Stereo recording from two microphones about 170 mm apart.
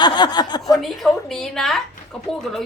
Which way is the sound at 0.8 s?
Centre (ahead or behind).